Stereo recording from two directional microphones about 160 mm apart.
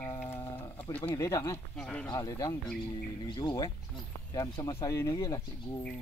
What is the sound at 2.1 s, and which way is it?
Speech, 20° left (ahead or behind).